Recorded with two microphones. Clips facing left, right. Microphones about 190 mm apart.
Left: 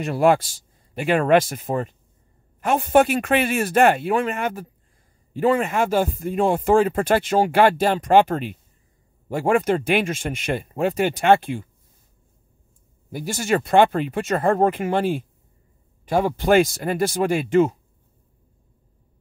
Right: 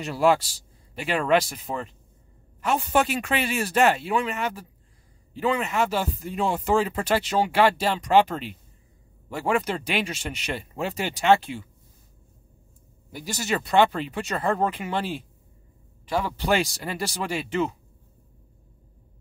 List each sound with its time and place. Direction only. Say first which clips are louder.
0.0 s speech: left 3 dB; 55° left (ahead or behind)
13.1 s speech: left 6 dB; 50° left (ahead or behind)